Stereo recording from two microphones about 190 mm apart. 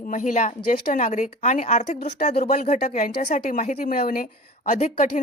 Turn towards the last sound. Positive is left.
turn(degrees=40)  # may be behind; listen again after turning